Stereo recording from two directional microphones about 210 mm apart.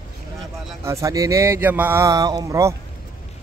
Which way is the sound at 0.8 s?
15° right (ahead or behind).